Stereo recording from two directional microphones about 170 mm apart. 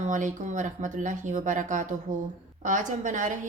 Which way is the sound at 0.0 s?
45° right (ahead or behind).